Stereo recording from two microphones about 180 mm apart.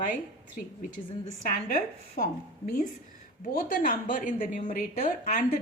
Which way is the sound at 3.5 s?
50° left (ahead or behind).